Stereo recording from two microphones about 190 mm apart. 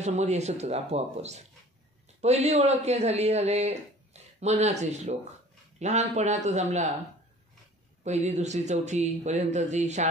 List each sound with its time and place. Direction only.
0.0 s a man's voice: 35° right (ahead or behind)
8.0 s a man's voice: 35° right (ahead or behind)